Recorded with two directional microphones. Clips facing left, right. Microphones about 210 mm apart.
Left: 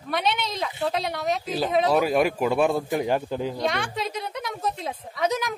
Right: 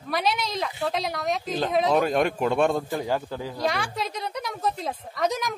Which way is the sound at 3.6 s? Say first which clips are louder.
Even; centre (ahead or behind).